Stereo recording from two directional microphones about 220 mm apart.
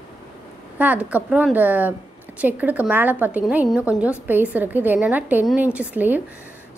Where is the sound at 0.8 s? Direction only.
5° right (ahead or behind).